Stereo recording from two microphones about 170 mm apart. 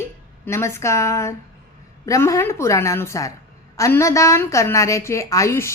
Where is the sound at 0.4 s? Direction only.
15° left (ahead or behind).